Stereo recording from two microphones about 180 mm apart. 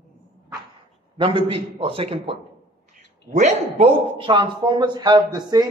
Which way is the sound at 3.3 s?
40° right (ahead or behind).